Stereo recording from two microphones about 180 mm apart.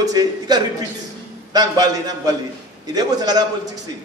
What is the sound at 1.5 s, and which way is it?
A man's voice, 20° right (ahead or behind).